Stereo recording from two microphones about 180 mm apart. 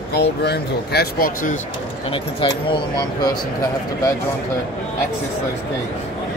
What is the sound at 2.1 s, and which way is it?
Speech, 30° left (ahead or behind).